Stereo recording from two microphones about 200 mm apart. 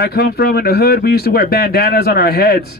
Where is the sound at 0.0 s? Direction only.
50° left (ahead or behind).